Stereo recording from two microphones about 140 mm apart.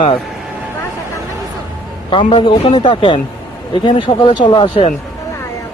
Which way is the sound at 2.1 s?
40° left (ahead or behind).